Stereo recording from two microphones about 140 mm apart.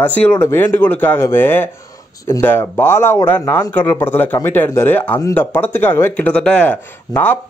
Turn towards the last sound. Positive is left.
turn(degrees=10)  # may be behind; listen again after turning